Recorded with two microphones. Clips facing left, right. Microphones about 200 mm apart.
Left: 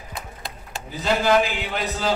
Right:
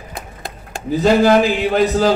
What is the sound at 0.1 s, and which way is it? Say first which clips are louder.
A man's voice: right 4 dB; 50° right (ahead or behind).